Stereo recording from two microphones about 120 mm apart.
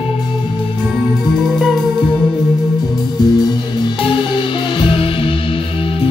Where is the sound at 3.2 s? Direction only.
35° left (ahead or behind).